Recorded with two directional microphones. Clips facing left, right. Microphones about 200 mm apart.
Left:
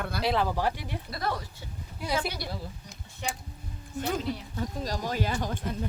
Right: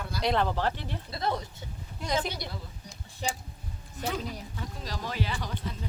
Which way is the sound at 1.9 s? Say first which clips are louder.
Even; 10° left (ahead or behind).